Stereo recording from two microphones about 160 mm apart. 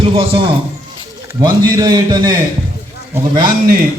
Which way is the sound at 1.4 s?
25° right (ahead or behind).